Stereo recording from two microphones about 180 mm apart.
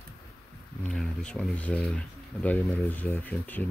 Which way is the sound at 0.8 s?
5° left (ahead or behind).